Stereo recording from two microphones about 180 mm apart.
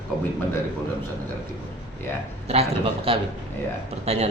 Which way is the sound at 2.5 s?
35° right (ahead or behind).